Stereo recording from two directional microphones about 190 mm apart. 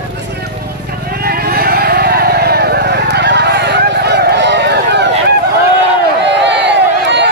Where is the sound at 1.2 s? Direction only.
55° right (ahead or behind).